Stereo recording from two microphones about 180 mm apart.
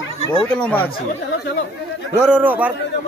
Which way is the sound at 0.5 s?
5° left (ahead or behind).